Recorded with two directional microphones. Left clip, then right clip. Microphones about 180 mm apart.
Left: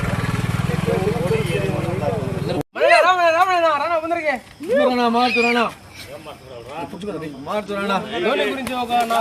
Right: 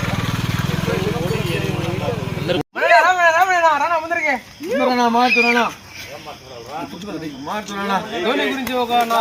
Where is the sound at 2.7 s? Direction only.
40° left (ahead or behind).